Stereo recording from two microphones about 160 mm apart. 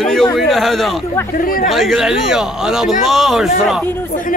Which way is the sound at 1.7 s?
Centre (ahead or behind).